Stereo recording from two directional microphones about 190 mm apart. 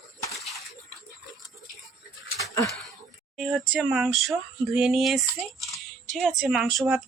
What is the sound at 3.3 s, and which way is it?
Speech, centre (ahead or behind).